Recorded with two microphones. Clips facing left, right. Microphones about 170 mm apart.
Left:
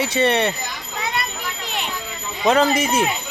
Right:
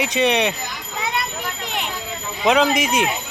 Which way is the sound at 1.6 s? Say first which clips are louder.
Even; 20° right (ahead or behind).